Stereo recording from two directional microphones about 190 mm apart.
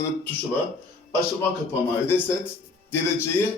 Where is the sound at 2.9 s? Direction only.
10° left (ahead or behind).